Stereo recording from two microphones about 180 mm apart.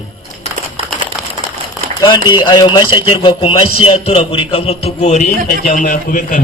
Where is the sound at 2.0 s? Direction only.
25° left (ahead or behind).